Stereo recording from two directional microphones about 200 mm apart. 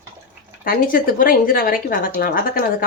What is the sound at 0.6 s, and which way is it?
A woman's voice, 45° left (ahead or behind).